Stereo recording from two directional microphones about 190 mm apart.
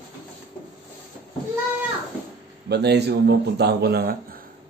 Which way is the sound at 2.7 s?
60° right (ahead or behind).